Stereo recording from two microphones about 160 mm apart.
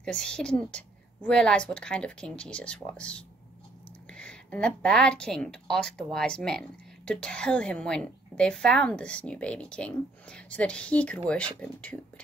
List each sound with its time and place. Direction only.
0.0 s a woman's voice: 5° left (ahead or behind)